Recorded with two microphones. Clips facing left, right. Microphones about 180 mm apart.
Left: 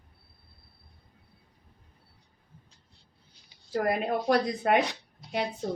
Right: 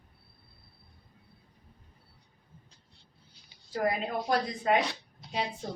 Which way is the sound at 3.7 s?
65° left (ahead or behind).